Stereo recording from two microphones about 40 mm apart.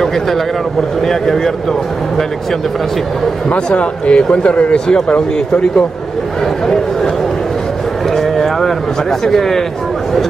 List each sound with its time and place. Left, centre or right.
1.0 s a man's voice: centre
3.4 s a man's voice: left
8.1 s a sound: centre
9.2 s a man's voice: centre